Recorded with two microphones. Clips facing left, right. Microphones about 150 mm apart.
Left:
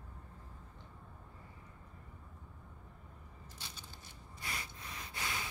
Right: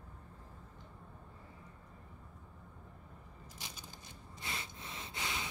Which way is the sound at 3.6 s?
15° right (ahead or behind).